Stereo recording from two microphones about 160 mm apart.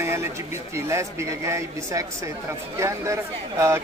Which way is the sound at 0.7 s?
15° right (ahead or behind).